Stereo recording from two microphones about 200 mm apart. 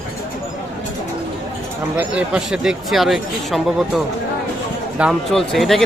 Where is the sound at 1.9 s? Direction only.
5° right (ahead or behind).